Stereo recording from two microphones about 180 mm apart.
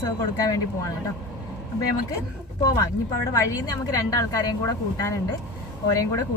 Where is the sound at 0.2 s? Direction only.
20° left (ahead or behind).